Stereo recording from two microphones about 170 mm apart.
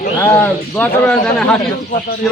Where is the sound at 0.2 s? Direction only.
10° left (ahead or behind).